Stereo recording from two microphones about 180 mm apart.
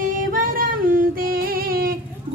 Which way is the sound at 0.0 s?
50° right (ahead or behind).